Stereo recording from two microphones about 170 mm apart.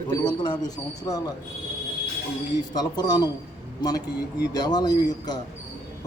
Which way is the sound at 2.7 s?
25° left (ahead or behind).